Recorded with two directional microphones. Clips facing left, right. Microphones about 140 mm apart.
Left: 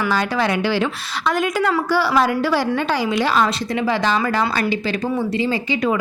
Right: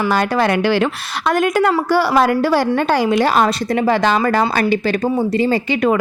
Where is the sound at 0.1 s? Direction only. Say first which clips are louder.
Right 4 dB; 55° right (ahead or behind).